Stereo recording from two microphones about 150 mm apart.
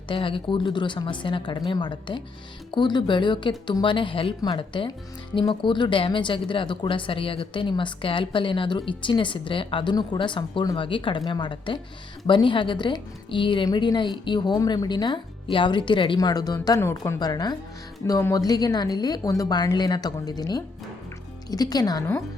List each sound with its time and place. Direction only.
0.1 s a woman's voice: 35° left (ahead or behind)